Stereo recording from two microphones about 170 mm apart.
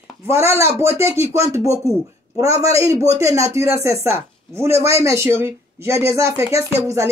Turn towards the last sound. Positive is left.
turn(degrees=-15)  # may be behind; listen again after turning